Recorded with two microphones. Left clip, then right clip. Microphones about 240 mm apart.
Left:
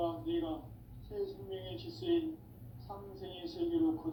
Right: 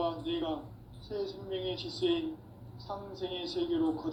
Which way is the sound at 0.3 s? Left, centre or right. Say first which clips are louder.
Right 1 dB; right.